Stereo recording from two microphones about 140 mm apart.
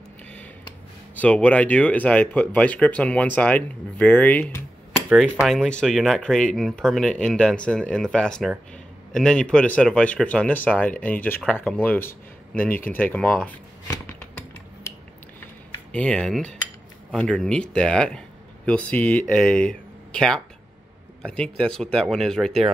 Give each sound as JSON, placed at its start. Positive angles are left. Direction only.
{"t": 1.1, "sound": "speech", "side_deg": 10}
{"t": 14.0, "sound": "typing", "side_deg": 20}
{"t": 15.9, "sound": "speech", "side_deg": 5}